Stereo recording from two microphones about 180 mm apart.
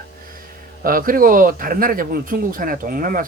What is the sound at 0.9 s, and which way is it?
Speech, 50° right (ahead or behind).